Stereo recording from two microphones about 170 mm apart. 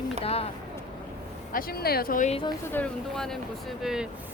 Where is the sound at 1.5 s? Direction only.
65° left (ahead or behind).